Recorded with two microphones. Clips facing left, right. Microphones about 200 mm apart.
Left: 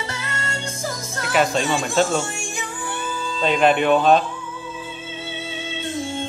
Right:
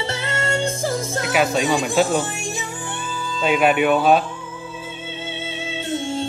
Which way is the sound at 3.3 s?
5° right (ahead or behind).